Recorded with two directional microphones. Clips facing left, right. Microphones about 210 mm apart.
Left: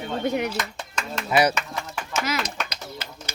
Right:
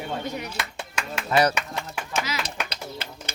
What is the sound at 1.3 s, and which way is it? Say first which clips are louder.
Speech: left 1 dB; 10° left (ahead or behind).